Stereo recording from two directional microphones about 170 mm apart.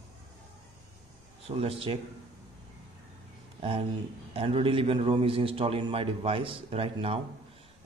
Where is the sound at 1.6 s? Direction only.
35° right (ahead or behind).